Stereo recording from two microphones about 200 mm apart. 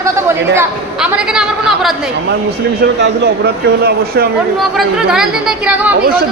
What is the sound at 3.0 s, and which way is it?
Speech, 55° right (ahead or behind).